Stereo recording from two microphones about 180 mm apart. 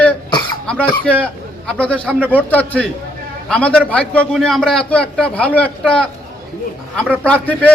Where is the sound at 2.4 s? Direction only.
10° left (ahead or behind).